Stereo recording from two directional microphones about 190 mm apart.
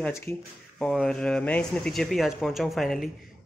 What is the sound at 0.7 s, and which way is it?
Speech, centre (ahead or behind).